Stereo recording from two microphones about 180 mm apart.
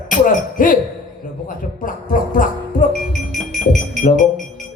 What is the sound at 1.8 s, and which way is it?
Speech, 50° left (ahead or behind).